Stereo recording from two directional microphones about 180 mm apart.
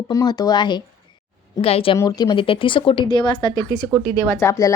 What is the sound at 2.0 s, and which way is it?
Speech, 20° left (ahead or behind).